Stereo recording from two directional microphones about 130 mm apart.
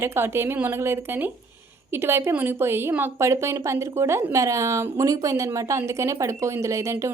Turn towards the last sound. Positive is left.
turn(degrees=-25)  # may be behind; listen again after turning